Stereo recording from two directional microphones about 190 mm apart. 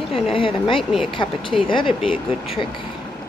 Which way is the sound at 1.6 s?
25° left (ahead or behind).